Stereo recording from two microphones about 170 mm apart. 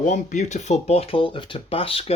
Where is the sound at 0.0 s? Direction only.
45° left (ahead or behind).